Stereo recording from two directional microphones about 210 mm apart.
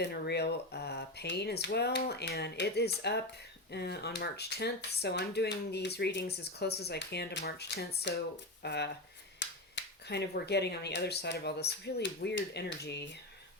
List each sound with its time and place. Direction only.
0.0 s speech: 50° left (ahead or behind)